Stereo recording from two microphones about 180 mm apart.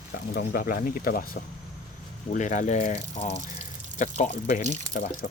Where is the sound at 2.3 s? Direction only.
45° left (ahead or behind).